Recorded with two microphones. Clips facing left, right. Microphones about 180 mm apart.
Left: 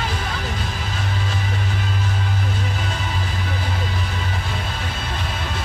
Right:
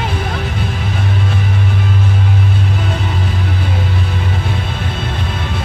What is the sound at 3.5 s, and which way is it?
Vehicle, 60° right (ahead or behind).